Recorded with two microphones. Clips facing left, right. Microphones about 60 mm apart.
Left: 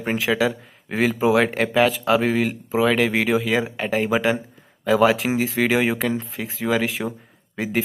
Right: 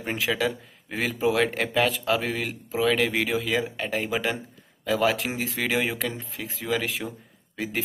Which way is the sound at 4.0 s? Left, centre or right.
Left.